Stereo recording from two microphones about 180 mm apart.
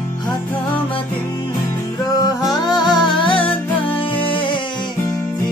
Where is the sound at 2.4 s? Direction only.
25° left (ahead or behind).